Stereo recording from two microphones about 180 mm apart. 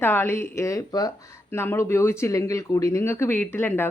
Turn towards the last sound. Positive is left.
turn(degrees=10)  # may be behind; listen again after turning